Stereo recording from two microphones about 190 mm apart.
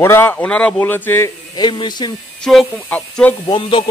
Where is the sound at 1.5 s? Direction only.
25° left (ahead or behind).